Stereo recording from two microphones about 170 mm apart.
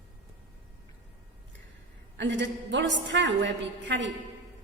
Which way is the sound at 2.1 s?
90° right.